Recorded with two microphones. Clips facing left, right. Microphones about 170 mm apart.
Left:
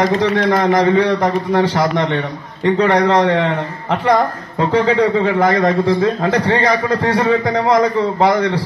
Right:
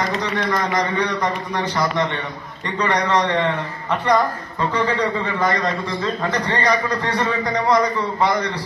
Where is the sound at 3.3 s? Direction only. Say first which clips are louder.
Left 4 dB; 70° left (ahead or behind).